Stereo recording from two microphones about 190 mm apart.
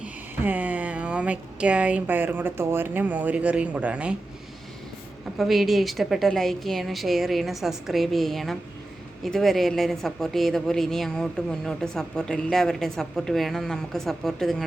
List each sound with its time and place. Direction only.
0.0 s speech: 10° right (ahead or behind)
5.4 s speech: centre (ahead or behind)